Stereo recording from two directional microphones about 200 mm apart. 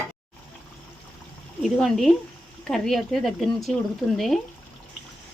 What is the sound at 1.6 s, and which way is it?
Speech, centre (ahead or behind).